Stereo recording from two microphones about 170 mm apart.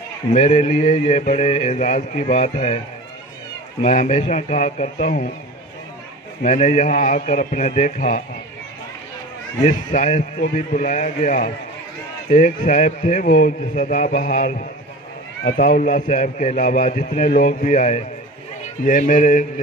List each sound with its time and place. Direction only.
0.3 s speech: 40° left (ahead or behind)
3.8 s a man's voice: 45° left (ahead or behind)
6.4 s a man's voice: 45° left (ahead or behind)
9.9 s a man's voice: 45° left (ahead or behind)